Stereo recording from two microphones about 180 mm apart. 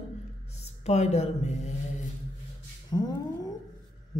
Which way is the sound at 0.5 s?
35° left (ahead or behind).